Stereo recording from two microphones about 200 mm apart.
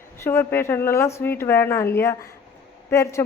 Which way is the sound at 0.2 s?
10° left (ahead or behind).